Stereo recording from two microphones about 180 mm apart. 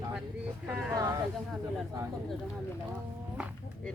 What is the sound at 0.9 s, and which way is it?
Speech, 20° right (ahead or behind).